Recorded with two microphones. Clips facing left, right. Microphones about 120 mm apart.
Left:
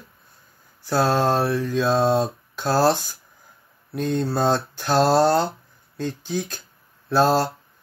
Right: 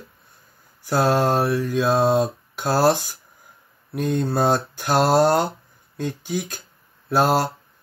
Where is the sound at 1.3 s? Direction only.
15° right (ahead or behind).